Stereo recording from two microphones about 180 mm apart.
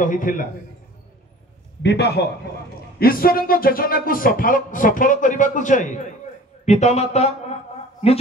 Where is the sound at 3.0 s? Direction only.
55° left (ahead or behind).